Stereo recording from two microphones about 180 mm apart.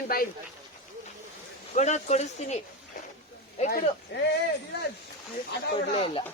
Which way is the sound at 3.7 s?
60° left (ahead or behind).